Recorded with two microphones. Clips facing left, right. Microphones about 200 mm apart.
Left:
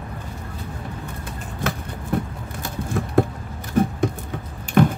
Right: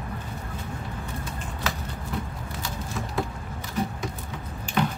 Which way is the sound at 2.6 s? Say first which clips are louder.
Left 8 dB; 55° left (ahead or behind).